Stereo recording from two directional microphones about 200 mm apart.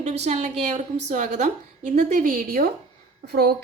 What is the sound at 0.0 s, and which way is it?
A woman's voice, 35° right (ahead or behind).